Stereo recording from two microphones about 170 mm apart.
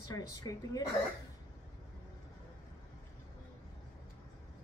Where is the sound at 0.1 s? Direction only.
20° left (ahead or behind).